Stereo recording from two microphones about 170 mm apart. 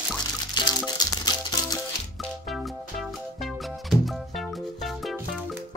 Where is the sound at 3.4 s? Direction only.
Centre (ahead or behind).